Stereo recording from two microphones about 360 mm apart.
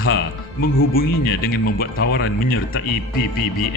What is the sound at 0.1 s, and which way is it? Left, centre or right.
Speech, left.